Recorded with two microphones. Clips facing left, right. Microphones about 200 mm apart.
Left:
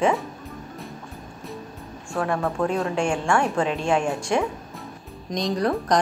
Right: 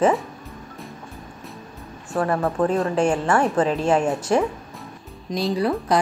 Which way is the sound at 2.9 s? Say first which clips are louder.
Right 4 dB; 40° right (ahead or behind).